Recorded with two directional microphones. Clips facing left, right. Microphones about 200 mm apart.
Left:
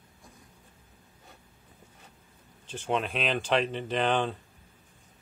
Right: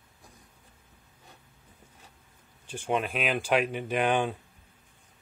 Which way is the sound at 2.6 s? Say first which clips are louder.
Right 1 dB; 10° right (ahead or behind).